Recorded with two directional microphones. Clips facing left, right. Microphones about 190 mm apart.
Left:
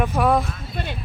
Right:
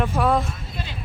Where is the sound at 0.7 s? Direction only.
60° left (ahead or behind).